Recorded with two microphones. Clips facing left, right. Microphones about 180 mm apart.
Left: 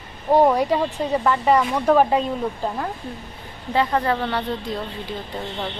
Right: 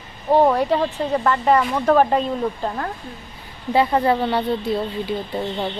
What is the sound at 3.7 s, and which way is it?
Speech, 15° right (ahead or behind).